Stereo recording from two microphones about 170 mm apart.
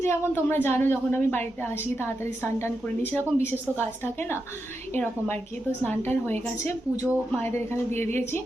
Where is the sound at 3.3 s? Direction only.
40° right (ahead or behind).